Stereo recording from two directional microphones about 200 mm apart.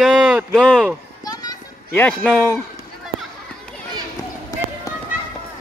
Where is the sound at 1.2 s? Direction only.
20° left (ahead or behind).